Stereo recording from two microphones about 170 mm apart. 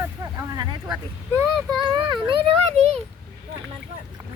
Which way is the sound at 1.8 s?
25° right (ahead or behind).